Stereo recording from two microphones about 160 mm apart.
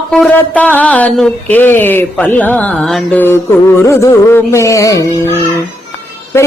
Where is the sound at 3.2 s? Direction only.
15° left (ahead or behind).